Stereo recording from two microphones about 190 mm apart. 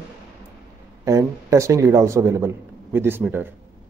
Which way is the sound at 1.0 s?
15° right (ahead or behind).